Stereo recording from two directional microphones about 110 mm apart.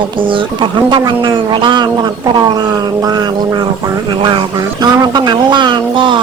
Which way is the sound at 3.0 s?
35° right (ahead or behind).